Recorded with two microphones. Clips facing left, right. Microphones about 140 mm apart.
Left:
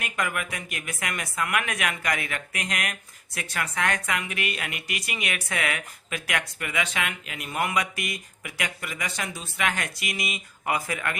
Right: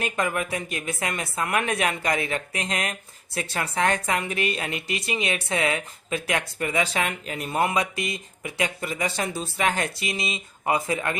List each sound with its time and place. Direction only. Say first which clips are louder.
0.0 s a woman's voice: right 4 dB; 30° right (ahead or behind)